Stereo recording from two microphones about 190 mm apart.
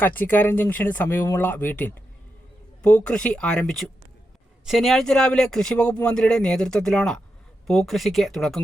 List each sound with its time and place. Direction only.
0.0 s speech: 10° left (ahead or behind)